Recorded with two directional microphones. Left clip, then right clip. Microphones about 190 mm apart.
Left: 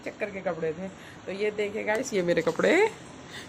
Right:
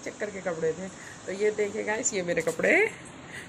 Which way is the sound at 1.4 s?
10° left (ahead or behind).